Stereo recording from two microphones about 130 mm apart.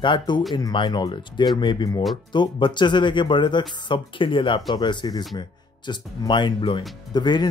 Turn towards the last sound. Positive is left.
turn(degrees=35)  # may be behind; listen again after turning